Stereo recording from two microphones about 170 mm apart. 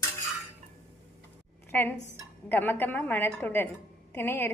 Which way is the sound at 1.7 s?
10° left (ahead or behind).